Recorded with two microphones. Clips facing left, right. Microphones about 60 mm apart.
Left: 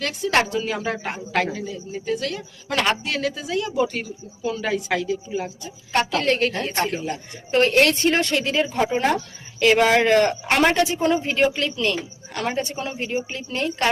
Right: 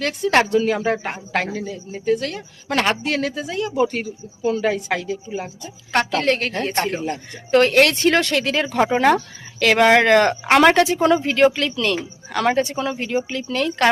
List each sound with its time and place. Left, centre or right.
0.0 s speech: right
7.5 s speech: right
7.9 s a woman's voice: right
11.2 s speech: right
12.3 s a woman's voice: right